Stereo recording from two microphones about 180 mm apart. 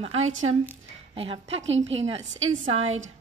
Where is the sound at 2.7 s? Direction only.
35° right (ahead or behind).